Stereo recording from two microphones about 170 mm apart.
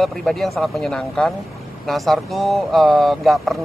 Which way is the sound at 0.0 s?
5° left (ahead or behind).